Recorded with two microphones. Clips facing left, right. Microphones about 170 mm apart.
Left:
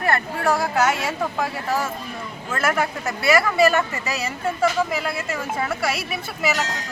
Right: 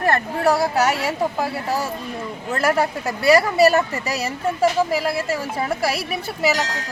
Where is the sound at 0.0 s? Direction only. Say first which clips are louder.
Right 3 dB; 40° right (ahead or behind).